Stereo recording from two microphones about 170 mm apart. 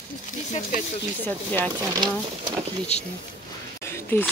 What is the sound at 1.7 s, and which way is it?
Speech, 25° right (ahead or behind).